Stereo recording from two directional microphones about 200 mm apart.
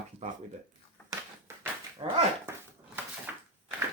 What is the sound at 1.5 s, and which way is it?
Dog, 15° right (ahead or behind).